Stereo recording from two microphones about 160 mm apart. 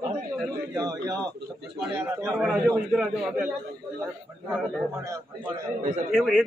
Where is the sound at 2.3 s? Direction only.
5° right (ahead or behind).